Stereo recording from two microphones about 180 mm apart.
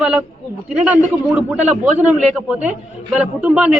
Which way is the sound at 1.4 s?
10° right (ahead or behind).